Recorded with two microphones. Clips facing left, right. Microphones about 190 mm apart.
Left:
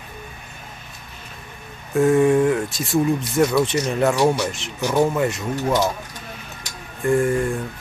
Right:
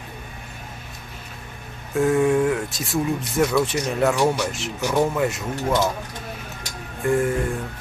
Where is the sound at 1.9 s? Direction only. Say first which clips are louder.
Left 3 dB; centre (ahead or behind).